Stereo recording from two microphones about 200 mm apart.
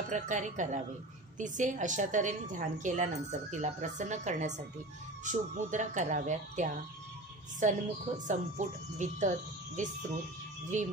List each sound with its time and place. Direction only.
0.1 s a woman's voice: 35° right (ahead or behind)